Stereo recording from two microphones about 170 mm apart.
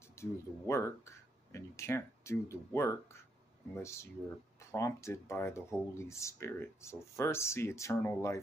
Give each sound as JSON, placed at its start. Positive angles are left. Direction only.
{"t": 0.2, "sound": "speech", "side_deg": 15}